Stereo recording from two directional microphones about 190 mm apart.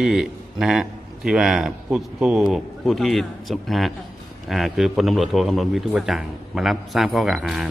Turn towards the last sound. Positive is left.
turn(degrees=0)  # may be behind; listen again after turning